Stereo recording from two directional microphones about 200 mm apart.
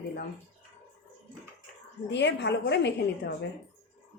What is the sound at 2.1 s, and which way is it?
A woman's voice, 60° left (ahead or behind).